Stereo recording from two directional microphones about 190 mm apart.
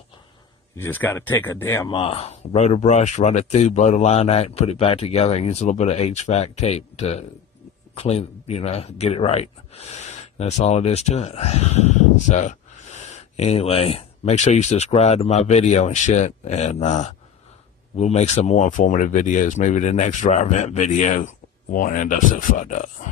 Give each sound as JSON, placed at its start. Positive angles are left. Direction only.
{"t": 0.7, "sound": "speech", "side_deg": 10}
{"t": 1.9, "sound": "speech", "side_deg": 25}